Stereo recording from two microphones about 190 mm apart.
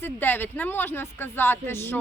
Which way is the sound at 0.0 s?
10° left (ahead or behind).